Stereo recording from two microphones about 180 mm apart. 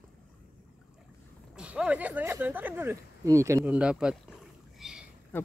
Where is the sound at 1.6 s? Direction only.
5° right (ahead or behind).